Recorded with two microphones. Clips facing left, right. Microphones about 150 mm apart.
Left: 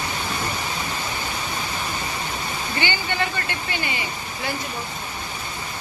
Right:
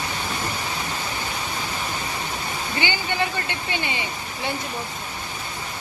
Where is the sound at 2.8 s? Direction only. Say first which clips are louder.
Even; 15° right (ahead or behind).